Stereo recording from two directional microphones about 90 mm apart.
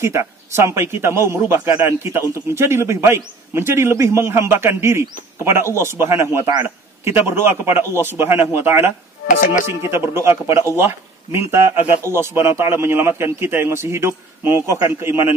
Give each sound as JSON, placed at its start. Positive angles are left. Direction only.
{"t": 0.0, "sound": "speech", "side_deg": -30}
{"t": 7.8, "sound": "speech", "side_deg": 25}
{"t": 8.1, "sound": "speech", "side_deg": -25}